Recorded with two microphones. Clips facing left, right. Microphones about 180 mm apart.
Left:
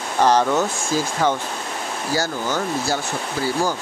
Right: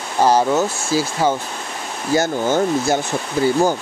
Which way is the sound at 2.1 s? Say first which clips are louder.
Right 7 dB; 20° right (ahead or behind).